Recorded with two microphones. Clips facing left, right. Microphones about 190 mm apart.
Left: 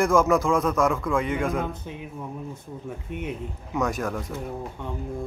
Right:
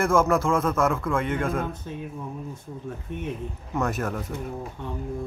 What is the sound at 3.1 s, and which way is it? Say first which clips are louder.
Speech: left 1 dB; 15° left (ahead or behind).